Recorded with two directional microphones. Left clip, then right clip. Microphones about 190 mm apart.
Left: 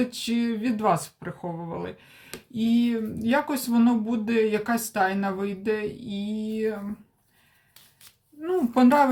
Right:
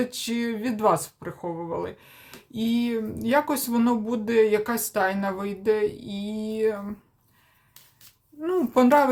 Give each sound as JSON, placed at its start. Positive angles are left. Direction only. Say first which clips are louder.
{"t": 0.0, "sound": "speech", "louder": "even", "side_deg": -20}
{"t": 8.4, "sound": "speech", "louder": "right 1 dB", "side_deg": -20}